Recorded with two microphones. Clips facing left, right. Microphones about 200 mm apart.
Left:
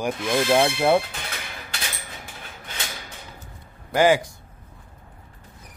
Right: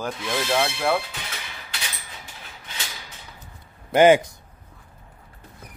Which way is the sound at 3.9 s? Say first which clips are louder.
Right 3 dB; 20° right (ahead or behind).